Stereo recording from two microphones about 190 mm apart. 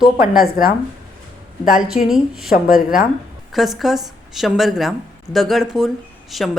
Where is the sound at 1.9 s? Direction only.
Centre (ahead or behind).